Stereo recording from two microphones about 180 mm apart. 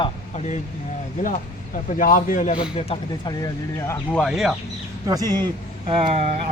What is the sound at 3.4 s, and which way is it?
Speech, 15° left (ahead or behind).